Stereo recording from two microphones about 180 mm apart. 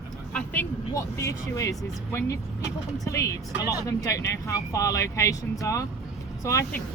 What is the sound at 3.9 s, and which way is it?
Speech, 20° left (ahead or behind).